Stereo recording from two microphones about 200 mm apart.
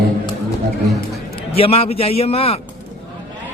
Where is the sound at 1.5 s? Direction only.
30° left (ahead or behind).